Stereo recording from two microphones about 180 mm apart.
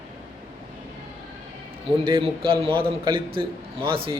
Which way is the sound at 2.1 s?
30° right (ahead or behind).